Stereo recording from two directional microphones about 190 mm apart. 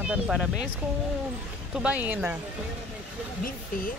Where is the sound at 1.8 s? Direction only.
10° right (ahead or behind).